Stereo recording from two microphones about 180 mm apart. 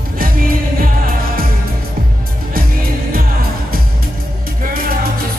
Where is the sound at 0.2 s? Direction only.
55° right (ahead or behind).